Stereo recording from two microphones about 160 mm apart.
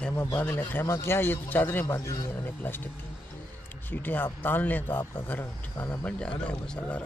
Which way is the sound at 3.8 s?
10° left (ahead or behind).